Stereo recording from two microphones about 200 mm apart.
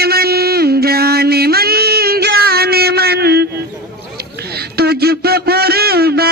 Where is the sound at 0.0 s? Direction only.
50° right (ahead or behind).